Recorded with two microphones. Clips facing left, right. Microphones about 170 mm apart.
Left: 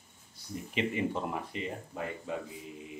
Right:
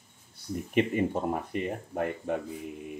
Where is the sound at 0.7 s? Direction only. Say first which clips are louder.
Right 5 dB; 50° right (ahead or behind).